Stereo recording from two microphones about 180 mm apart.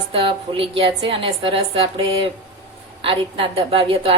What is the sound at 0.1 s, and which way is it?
A woman's voice, 30° right (ahead or behind).